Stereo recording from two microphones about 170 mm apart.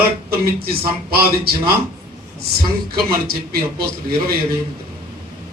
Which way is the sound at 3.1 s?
65° right (ahead or behind).